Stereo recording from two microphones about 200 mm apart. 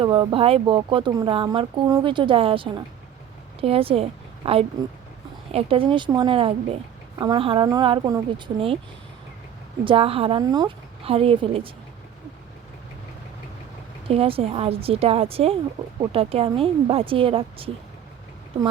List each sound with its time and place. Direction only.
0.0 s a woman's voice: 25° right (ahead or behind)
9.8 s speech: 25° right (ahead or behind)
14.1 s speech: 30° right (ahead or behind)